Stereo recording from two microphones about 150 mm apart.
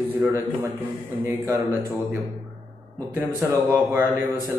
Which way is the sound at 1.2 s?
15° right (ahead or behind).